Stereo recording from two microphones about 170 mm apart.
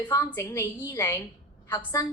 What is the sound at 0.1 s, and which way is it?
A woman's voice, 15° left (ahead or behind).